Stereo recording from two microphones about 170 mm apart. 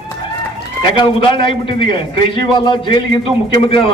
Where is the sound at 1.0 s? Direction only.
30° left (ahead or behind).